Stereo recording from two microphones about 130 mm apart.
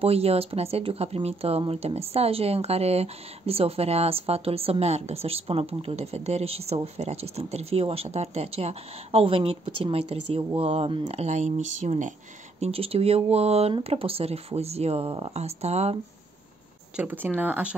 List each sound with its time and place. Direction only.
0.0 s speech: 50° right (ahead or behind)
12.5 s speech: 50° right (ahead or behind)
16.9 s speech: 15° right (ahead or behind)